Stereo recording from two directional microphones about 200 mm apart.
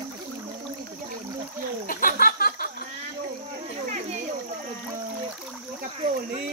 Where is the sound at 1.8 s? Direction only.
45° left (ahead or behind).